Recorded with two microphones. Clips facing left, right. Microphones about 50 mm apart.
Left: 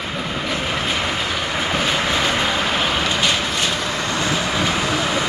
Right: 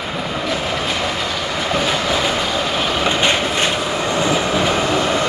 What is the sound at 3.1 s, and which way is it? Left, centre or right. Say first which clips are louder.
Vehicle: right 3 dB; right.